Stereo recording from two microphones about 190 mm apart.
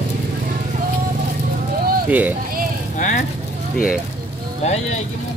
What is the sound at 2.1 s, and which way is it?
Speech, 10° right (ahead or behind).